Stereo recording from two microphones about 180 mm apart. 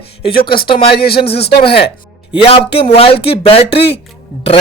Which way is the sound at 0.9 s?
60° left (ahead or behind).